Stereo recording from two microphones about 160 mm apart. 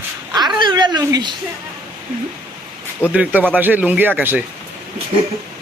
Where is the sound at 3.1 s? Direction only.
10° right (ahead or behind).